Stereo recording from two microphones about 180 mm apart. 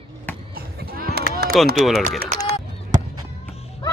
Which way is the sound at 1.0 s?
65° right (ahead or behind).